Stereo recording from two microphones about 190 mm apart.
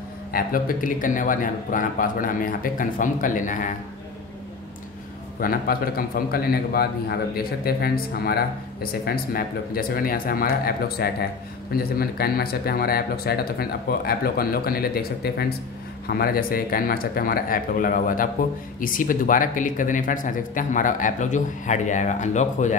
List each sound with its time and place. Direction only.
0.3 s speech: 50° left (ahead or behind)
5.4 s speech: 50° left (ahead or behind)